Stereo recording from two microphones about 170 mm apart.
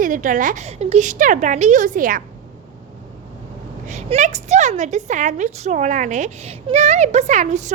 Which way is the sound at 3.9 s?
45° right (ahead or behind).